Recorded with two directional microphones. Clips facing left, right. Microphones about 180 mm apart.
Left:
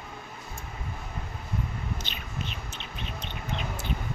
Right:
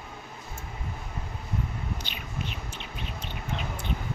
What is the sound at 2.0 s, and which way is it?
Bird, 10° right (ahead or behind).